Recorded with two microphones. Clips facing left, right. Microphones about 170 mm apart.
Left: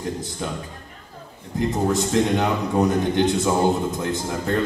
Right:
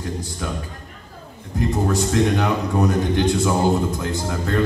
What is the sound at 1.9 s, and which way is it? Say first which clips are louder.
A man's voice: even; 20° left (ahead or behind).